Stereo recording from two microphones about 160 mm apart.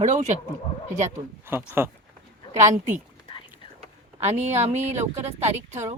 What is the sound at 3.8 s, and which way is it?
Speech, 45° right (ahead or behind).